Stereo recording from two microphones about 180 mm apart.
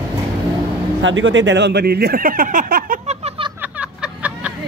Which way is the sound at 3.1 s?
30° right (ahead or behind).